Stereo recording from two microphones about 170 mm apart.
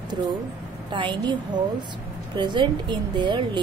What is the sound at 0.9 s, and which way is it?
A woman's voice, 25° right (ahead or behind).